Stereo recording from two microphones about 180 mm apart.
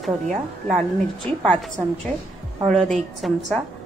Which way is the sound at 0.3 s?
40° right (ahead or behind).